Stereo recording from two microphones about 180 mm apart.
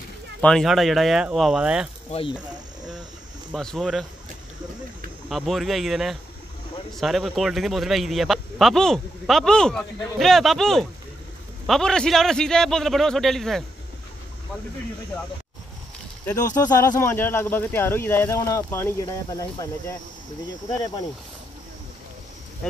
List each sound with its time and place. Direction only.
0.4 s a man's voice: 5° left (ahead or behind)
2.0 s speech: 30° left (ahead or behind)
3.5 s a man's voice: centre (ahead or behind)
5.3 s a man's voice: centre (ahead or behind)
16.5 s speech: 20° left (ahead or behind)